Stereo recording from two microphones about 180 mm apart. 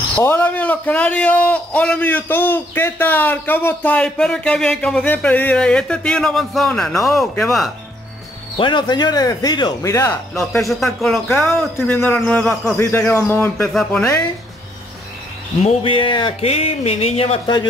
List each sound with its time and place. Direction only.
0.2 s a man's voice: 10° left (ahead or behind)
8.5 s speech: 25° left (ahead or behind)
10.4 s a man's voice: centre (ahead or behind)
15.6 s speech: 30° left (ahead or behind)